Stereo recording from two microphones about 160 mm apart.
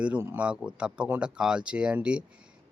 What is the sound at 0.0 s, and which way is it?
Speech, 10° right (ahead or behind).